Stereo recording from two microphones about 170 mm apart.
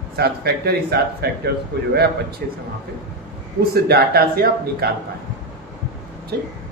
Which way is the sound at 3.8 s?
70° right (ahead or behind).